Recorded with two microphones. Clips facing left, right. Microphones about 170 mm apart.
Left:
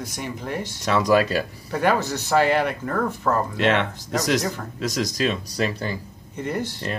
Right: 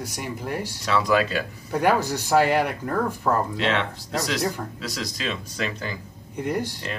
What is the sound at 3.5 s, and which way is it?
Speech, 55° left (ahead or behind).